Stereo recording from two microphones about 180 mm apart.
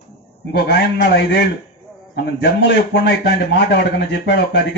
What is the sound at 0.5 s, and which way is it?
Speech, 65° left (ahead or behind).